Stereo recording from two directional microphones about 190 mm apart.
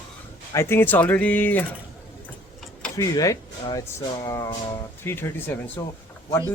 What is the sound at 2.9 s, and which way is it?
Speech, 15° left (ahead or behind).